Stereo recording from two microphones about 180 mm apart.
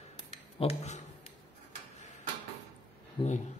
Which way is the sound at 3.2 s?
30° left (ahead or behind).